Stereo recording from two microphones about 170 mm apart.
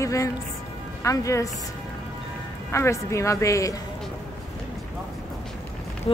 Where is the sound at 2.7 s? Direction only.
15° left (ahead or behind).